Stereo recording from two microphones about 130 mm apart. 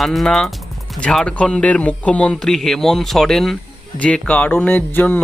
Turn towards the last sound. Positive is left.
turn(degrees=15)  # may be behind; listen again after turning